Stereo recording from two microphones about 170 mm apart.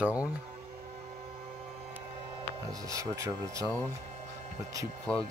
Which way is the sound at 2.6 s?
20° right (ahead or behind).